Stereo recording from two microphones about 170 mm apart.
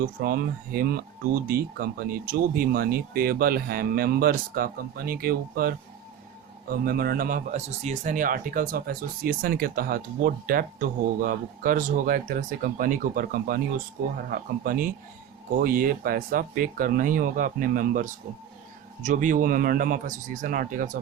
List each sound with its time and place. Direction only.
0.2 s speech: 60° right (ahead or behind)
7.7 s speech: 40° right (ahead or behind)